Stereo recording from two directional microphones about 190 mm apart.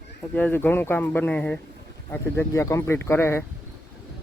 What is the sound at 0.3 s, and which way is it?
Speech, 10° left (ahead or behind).